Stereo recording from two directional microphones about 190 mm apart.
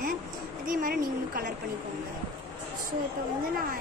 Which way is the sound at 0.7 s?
50° right (ahead or behind).